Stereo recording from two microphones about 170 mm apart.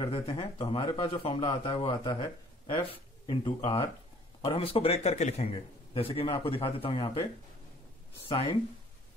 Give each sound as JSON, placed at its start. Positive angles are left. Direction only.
{"t": 0.0, "sound": "a man's voice", "side_deg": 20}
{"t": 0.4, "sound": "a man's voice", "side_deg": 30}
{"t": 1.1, "sound": "speech", "side_deg": 35}
{"t": 1.4, "sound": "a man's voice", "side_deg": 25}
{"t": 8.3, "sound": "speech", "side_deg": 30}